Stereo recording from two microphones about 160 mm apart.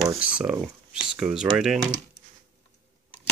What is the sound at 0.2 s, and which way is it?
Speech, 5° right (ahead or behind).